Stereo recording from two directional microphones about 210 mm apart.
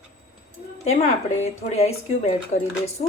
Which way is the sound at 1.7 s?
30° left (ahead or behind).